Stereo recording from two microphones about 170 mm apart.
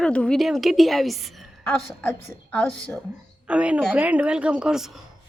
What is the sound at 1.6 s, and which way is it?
A woman's voice, 10° left (ahead or behind).